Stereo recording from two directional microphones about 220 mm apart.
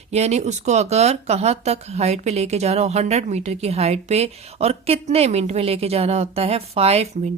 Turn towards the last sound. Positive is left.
turn(degrees=-30)  # may be behind; listen again after turning